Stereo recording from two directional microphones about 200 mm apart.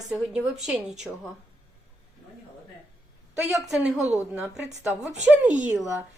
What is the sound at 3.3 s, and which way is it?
Speech, 5° right (ahead or behind).